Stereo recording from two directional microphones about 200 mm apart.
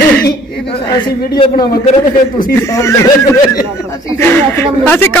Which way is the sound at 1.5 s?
40° left (ahead or behind).